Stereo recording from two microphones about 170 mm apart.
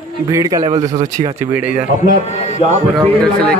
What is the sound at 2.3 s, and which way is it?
Speech, 40° left (ahead or behind).